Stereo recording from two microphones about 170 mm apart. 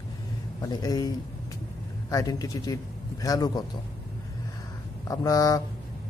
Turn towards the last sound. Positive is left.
turn(degrees=20)  # may be behind; listen again after turning